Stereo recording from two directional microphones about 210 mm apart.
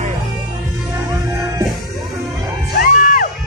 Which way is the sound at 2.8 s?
40° left (ahead or behind).